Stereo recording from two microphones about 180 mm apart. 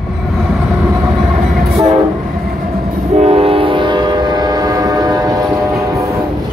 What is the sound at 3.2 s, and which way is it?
Train, 35° right (ahead or behind).